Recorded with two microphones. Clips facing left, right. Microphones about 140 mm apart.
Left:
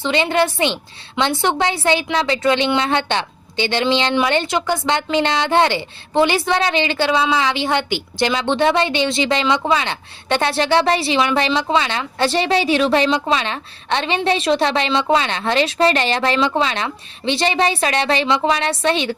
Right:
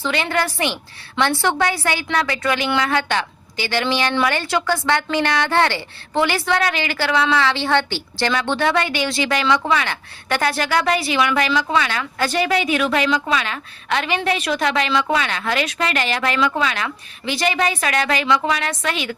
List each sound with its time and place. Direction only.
0.0 s a woman's voice: 20° left (ahead or behind)